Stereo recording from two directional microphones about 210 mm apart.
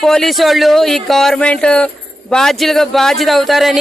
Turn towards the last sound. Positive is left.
turn(degrees=0)  # may be behind; listen again after turning